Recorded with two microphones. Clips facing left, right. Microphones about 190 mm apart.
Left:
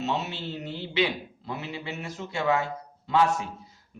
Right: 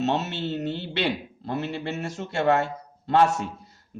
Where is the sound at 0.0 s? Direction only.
70° right (ahead or behind).